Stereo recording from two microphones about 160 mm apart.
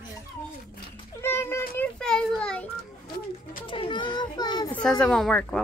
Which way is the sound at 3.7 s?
30° left (ahead or behind).